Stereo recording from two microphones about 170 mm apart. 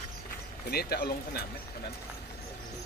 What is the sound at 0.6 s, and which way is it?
Speech, 65° left (ahead or behind).